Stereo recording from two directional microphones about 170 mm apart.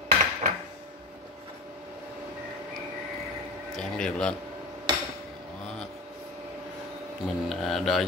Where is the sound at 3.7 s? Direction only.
5° left (ahead or behind).